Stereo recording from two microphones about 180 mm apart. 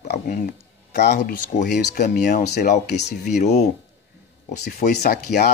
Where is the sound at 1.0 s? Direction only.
65° left (ahead or behind).